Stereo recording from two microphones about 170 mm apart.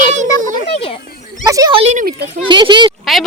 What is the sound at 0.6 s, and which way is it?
Speech, 35° left (ahead or behind).